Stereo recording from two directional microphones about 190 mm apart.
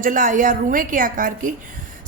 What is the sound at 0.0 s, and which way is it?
A woman's voice, 45° right (ahead or behind).